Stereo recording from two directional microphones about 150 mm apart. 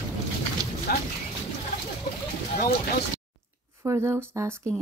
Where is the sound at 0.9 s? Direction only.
80° left.